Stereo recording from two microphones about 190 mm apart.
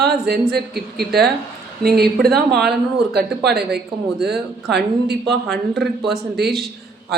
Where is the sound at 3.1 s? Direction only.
60° right (ahead or behind).